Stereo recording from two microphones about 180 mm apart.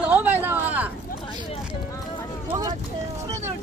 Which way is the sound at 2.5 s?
25° right (ahead or behind).